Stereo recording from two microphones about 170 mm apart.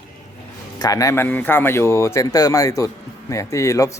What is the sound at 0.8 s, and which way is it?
A man's voice, 20° left (ahead or behind).